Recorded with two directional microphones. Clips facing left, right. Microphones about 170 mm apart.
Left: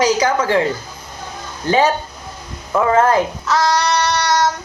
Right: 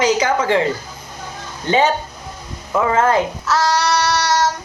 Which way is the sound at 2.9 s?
25° right (ahead or behind).